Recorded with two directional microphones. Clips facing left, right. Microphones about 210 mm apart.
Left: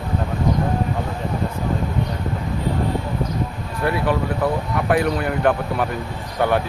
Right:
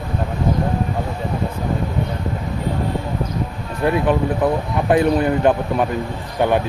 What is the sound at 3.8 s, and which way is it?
Speech, 20° right (ahead or behind).